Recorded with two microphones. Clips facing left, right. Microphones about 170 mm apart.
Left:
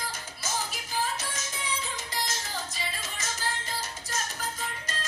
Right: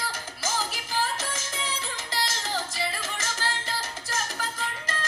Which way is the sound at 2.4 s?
90° right.